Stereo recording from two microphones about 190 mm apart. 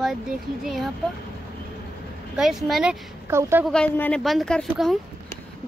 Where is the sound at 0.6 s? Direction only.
Centre (ahead or behind).